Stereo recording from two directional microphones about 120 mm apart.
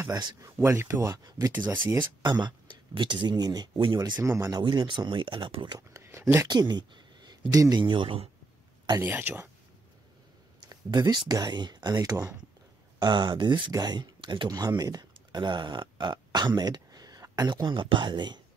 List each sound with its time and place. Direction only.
0.1 s speech: 35° right (ahead or behind)
0.6 s speech: 20° right (ahead or behind)
2.2 s speech: 40° right (ahead or behind)
4.2 s speech: 25° right (ahead or behind)
4.6 s speech: 40° right (ahead or behind)
5.8 s speech: 25° right (ahead or behind)
6.4 s speech: 35° right (ahead or behind)
9.0 s speech: 15° right (ahead or behind)
10.7 s speech: 35° right (ahead or behind)
13.0 s speech: 40° right (ahead or behind)